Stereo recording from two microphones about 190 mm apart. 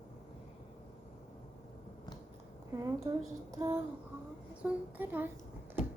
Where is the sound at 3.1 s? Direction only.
15° right (ahead or behind).